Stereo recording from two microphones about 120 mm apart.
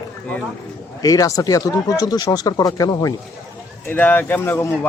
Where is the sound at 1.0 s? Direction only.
30° left (ahead or behind).